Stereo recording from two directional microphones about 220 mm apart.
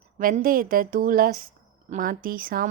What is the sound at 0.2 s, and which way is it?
A woman's voice, 40° right (ahead or behind).